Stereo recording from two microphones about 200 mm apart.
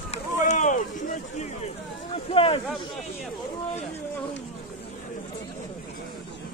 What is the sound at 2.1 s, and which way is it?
Speech, 30° left (ahead or behind).